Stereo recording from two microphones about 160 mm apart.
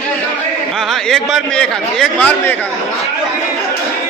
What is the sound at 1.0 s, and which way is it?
A man's voice, 5° left (ahead or behind).